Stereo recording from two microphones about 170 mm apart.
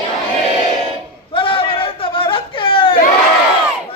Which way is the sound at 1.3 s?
30° left (ahead or behind).